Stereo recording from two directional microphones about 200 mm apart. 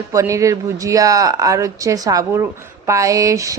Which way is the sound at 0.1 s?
15° right (ahead or behind).